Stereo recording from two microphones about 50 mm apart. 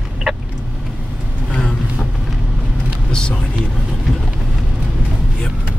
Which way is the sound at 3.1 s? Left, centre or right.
Centre.